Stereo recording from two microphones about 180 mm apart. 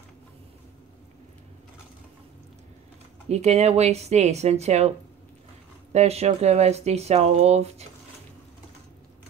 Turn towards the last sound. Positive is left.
turn(degrees=-35)  # may be behind; listen again after turning